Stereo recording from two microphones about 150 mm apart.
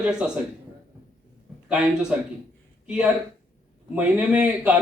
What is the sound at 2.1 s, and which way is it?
A man's voice, 10° right (ahead or behind).